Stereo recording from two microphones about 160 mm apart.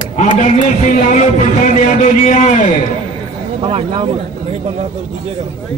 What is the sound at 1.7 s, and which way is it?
A man's voice, 50° left (ahead or behind).